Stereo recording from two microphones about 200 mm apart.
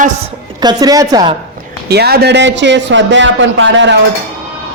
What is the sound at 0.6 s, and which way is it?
Speech, 20° right (ahead or behind).